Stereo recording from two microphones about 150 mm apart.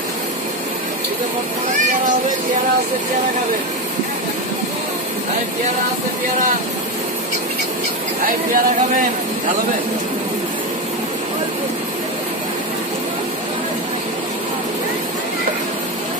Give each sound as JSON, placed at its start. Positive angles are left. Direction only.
{"t": 8.3, "sound": "speech", "side_deg": -65}